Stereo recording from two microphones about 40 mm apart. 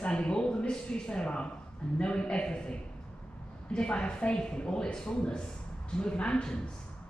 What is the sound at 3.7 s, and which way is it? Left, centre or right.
Speech, left.